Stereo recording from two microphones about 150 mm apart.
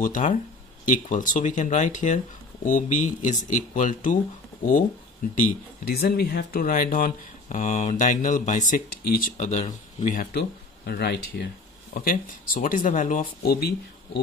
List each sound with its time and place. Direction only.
0.0 s speech: 60° left (ahead or behind)
5.9 s speech: 90° left
9.4 s speech: 55° left (ahead or behind)
10.9 s speech: 90° left
11.9 s speech: 75° left (ahead or behind); by 14.2 s 90° left